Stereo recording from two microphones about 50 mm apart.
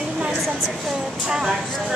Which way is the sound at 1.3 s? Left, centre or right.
Centre.